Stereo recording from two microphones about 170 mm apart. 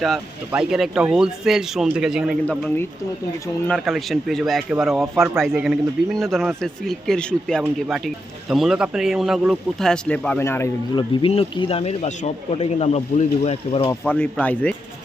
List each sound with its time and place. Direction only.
0.0 s speech: centre (ahead or behind); by 10.7 s 15° left (ahead or behind)
10.9 s speech: 30° left (ahead or behind)
14.0 s speech: 10° left (ahead or behind)